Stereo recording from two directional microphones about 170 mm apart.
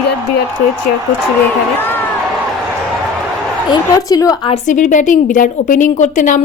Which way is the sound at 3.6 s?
25° left (ahead or behind).